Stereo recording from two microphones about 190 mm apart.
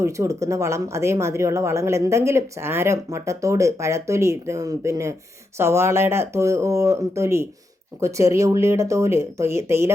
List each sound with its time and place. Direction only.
0.0 s speech: 15° right (ahead or behind)